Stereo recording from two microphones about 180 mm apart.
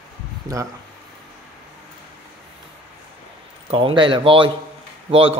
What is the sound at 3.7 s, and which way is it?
Speech, 30° right (ahead or behind).